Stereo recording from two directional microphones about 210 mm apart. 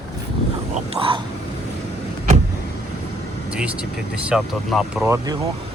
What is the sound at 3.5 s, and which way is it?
Speech, 5° right (ahead or behind).